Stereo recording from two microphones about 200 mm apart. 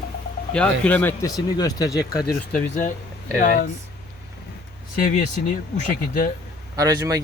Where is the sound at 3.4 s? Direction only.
45° left (ahead or behind).